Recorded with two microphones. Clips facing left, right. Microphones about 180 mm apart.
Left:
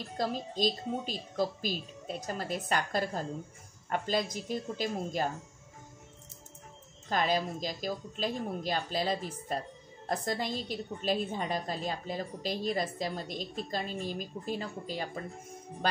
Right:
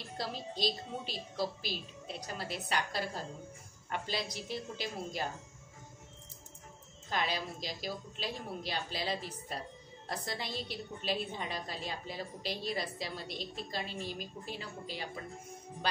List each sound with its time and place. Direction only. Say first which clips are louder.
0.2 s a woman's voice: left 6 dB; 45° left (ahead or behind)
7.1 s a woman's voice: left 6 dB; 45° left (ahead or behind)